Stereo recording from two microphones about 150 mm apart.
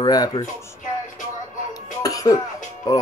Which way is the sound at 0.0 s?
25° left (ahead or behind).